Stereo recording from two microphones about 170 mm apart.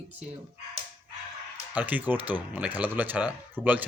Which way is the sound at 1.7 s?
10° right (ahead or behind).